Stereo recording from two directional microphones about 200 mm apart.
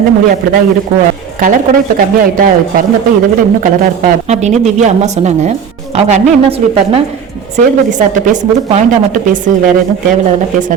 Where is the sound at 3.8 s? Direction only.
40° right (ahead or behind).